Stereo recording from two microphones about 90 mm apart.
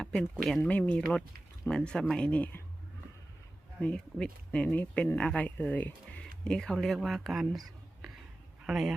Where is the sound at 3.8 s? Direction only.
15° left (ahead or behind).